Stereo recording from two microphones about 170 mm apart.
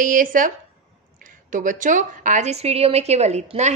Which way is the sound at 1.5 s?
50° right (ahead or behind).